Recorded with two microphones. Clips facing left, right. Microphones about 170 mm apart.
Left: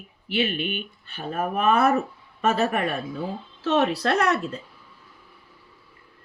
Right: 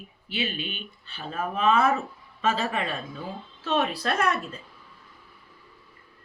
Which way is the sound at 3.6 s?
75° left (ahead or behind).